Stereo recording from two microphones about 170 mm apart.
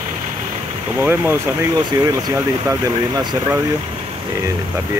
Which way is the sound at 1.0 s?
15° right (ahead or behind).